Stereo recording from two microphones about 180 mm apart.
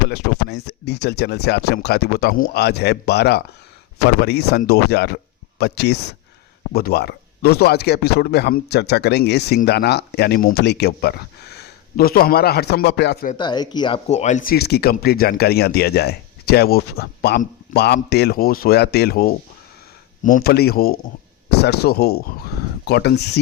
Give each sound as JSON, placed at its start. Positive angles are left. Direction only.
{"t": 0.1, "sound": "speech", "side_deg": 70}
{"t": 13.3, "sound": "speech", "side_deg": 25}
{"t": 14.1, "sound": "speech", "side_deg": 40}